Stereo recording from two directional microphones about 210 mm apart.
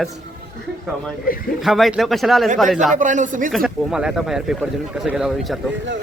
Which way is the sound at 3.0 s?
35° right (ahead or behind).